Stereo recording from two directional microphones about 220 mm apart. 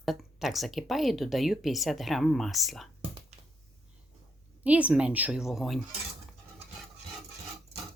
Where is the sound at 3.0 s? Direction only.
25° right (ahead or behind).